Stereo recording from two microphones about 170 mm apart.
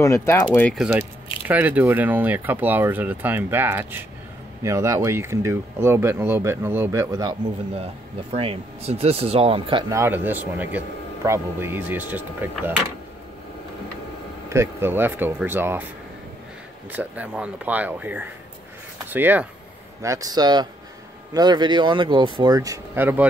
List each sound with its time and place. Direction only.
0.0 s speech: 15° left (ahead or behind)
0.6 s speech: 5° left (ahead or behind); by 7.3 s 20° right (ahead or behind)
7.7 s speech: 35° right (ahead or behind)
9.9 s speech: 10° right (ahead or behind)
14.5 s speech: 15° right (ahead or behind)
16.9 s speech: 10° right (ahead or behind)